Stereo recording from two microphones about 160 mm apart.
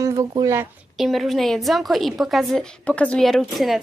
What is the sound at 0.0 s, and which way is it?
Speech, 20° right (ahead or behind).